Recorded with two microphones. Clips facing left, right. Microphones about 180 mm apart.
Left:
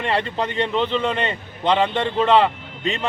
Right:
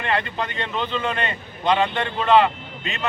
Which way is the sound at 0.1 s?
30° left (ahead or behind).